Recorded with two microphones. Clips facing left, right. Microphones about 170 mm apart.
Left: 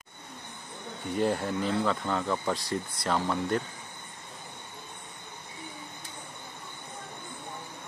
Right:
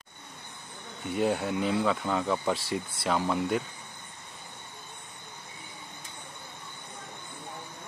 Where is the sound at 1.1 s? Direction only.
5° right (ahead or behind).